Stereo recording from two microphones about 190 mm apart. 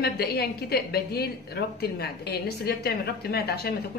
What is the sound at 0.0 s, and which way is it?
A woman's voice, 55° left (ahead or behind).